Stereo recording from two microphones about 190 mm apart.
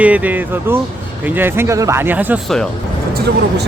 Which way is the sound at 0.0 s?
10° right (ahead or behind).